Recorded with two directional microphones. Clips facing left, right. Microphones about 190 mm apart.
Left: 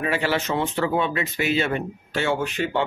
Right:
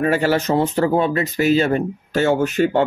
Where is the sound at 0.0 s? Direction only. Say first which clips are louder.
Right 6 dB; 45° right (ahead or behind).